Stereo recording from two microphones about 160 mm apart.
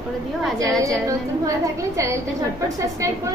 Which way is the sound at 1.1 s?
20° right (ahead or behind).